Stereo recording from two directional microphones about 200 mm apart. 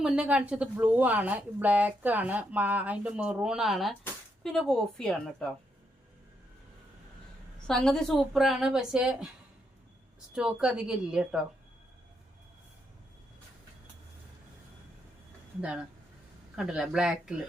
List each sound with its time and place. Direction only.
0.0 s speech: 5° right (ahead or behind)
7.7 s a woman's voice: 5° left (ahead or behind)
10.3 s a woman's voice: 5° right (ahead or behind)
15.6 s a woman's voice: 5° right (ahead or behind)